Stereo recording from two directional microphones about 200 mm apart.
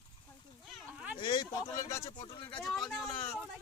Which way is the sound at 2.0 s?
25° left (ahead or behind).